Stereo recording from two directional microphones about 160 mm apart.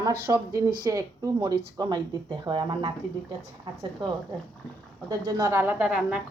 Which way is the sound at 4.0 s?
30° right (ahead or behind).